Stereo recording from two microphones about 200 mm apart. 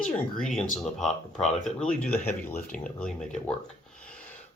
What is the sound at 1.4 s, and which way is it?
Speech, 35° left (ahead or behind).